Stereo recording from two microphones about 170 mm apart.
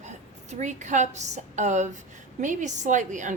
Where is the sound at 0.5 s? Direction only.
45° right (ahead or behind).